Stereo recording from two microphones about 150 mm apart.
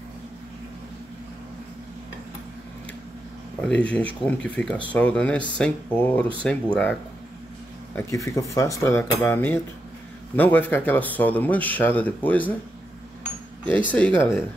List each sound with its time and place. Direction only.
3.6 s speech: 10° left (ahead or behind)
7.9 s speech: 20° left (ahead or behind)
13.7 s speech: 10° left (ahead or behind)